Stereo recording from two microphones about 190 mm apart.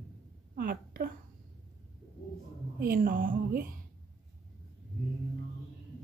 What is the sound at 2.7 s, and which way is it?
Speech, 50° right (ahead or behind).